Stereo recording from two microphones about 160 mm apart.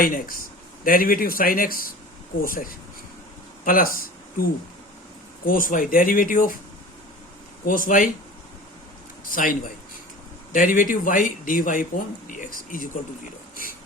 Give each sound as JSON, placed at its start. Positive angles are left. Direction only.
{"t": 0.0, "sound": "speech", "side_deg": 65}
{"t": 5.5, "sound": "speech", "side_deg": 60}
{"t": 7.6, "sound": "speech", "side_deg": 60}
{"t": 9.3, "sound": "speech", "side_deg": 60}